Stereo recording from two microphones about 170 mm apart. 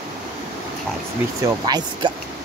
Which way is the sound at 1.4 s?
25° right (ahead or behind).